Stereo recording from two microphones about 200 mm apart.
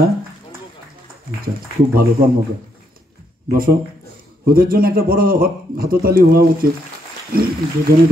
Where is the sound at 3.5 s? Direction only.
45° right (ahead or behind).